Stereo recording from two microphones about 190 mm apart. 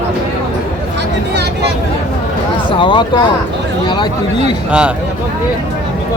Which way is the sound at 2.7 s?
25° left (ahead or behind).